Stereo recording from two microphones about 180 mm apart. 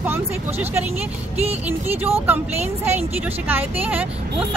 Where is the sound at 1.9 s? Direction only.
10° right (ahead or behind).